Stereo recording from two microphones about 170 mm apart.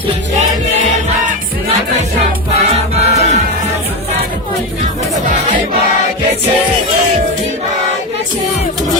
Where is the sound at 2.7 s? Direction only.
40° right (ahead or behind).